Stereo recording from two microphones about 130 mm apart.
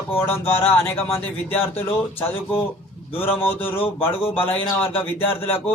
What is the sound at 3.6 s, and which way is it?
Speech, 15° left (ahead or behind).